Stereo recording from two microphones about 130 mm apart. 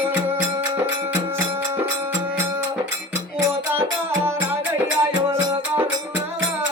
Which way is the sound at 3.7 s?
20° right (ahead or behind).